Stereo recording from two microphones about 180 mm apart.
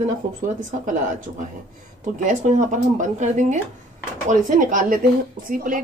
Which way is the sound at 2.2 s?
45° right (ahead or behind).